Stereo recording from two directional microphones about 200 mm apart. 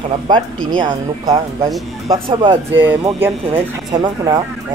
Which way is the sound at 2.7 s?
10° right (ahead or behind).